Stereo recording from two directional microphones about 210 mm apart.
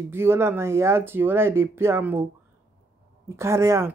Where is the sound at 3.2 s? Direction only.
15° right (ahead or behind).